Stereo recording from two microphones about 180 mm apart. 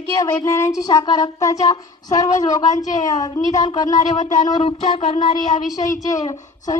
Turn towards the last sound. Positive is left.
turn(degrees=20)  # may be behind; listen again after turning